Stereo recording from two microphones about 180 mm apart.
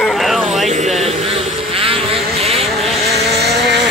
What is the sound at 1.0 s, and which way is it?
Vehicle, 30° right (ahead or behind).